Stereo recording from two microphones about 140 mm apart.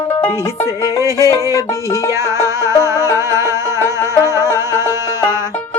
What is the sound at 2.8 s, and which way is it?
Music, 20° right (ahead or behind).